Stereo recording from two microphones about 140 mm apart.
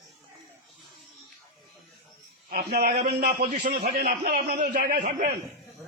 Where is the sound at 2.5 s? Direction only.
90° right.